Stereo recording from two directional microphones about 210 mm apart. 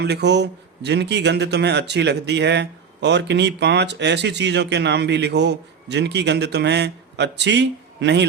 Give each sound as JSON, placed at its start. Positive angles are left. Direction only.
{"t": 0.0, "sound": "speech", "side_deg": -55}